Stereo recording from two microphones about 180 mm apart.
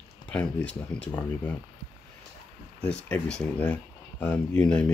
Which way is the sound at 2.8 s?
5° left (ahead or behind).